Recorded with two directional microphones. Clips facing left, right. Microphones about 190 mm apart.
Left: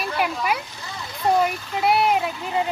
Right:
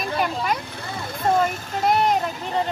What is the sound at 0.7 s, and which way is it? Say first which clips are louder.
Speech: right 4 dB; 55° right (ahead or behind).